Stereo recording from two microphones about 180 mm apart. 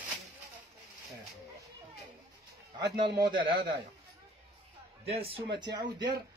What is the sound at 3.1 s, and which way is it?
Speech, 25° right (ahead or behind).